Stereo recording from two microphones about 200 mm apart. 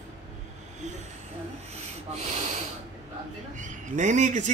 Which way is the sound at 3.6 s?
35° right (ahead or behind).